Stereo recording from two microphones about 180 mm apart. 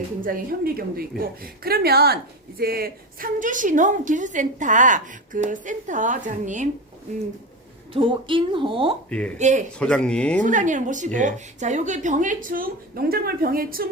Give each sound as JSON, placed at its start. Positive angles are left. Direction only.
{"t": 0.3, "sound": "a woman's voice", "side_deg": -55}
{"t": 7.9, "sound": "speech", "side_deg": -30}
{"t": 9.0, "sound": "speech", "side_deg": 5}
{"t": 9.4, "sound": "a man's voice", "side_deg": -40}
{"t": 9.7, "sound": "speech", "side_deg": 5}
{"t": 10.4, "sound": "a woman's voice", "side_deg": -45}